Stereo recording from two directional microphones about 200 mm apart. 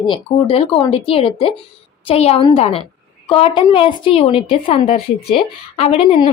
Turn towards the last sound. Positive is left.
turn(degrees=30)  # may be behind; listen again after turning